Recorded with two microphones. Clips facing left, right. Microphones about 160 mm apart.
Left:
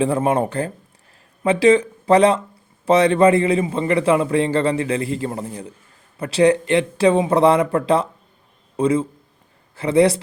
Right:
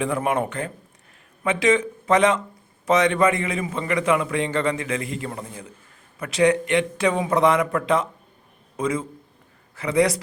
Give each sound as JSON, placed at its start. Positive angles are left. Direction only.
{"t": 0.0, "sound": "a man's voice", "side_deg": 30}